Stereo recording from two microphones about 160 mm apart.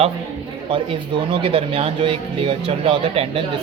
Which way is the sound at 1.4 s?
35° right (ahead or behind).